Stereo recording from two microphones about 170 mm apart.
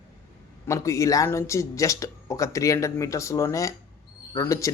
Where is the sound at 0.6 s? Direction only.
20° left (ahead or behind).